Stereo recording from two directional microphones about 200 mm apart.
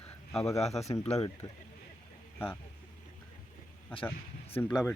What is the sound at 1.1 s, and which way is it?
Speech, 15° left (ahead or behind).